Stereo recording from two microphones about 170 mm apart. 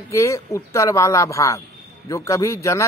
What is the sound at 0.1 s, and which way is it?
Speech, 15° left (ahead or behind).